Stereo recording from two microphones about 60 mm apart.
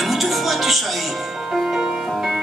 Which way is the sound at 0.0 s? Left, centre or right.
Centre.